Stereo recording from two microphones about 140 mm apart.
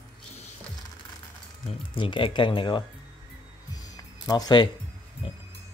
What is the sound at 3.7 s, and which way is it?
Music, 25° left (ahead or behind).